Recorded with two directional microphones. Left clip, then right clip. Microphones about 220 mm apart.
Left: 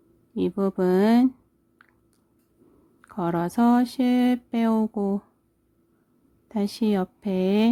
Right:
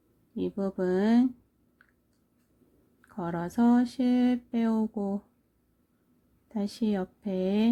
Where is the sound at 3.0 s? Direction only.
20° left (ahead or behind).